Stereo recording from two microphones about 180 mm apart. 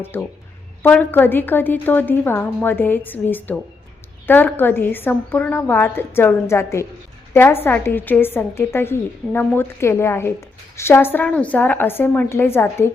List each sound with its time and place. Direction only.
0.0 s a woman's voice: 10° left (ahead or behind)